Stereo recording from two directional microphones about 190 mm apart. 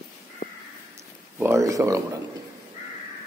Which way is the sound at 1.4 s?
15° right (ahead or behind).